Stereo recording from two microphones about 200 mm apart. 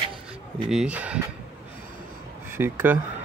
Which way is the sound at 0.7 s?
5° right (ahead or behind).